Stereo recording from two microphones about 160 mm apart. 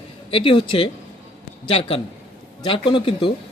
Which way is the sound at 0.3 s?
35° left (ahead or behind).